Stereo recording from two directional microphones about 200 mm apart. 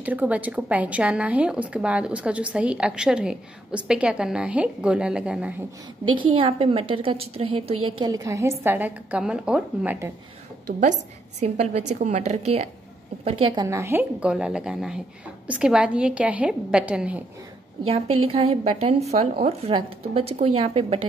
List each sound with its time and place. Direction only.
0.0 s speech: 5° right (ahead or behind)
6.0 s a woman's voice: 25° right (ahead or behind)
8.0 s a woman's voice: 20° right (ahead or behind)
10.8 s a woman's voice: 35° right (ahead or behind); by 17.2 s 5° right (ahead or behind)
18.3 s a woman's voice: 30° right (ahead or behind)